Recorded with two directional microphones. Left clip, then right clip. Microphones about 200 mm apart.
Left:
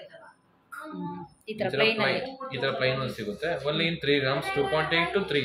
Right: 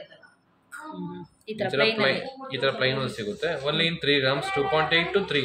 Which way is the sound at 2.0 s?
25° right (ahead or behind).